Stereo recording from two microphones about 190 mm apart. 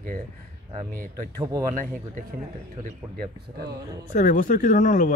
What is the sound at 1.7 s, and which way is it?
Speech, 45° right (ahead or behind).